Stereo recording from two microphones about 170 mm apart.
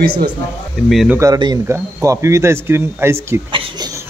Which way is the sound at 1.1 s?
20° right (ahead or behind).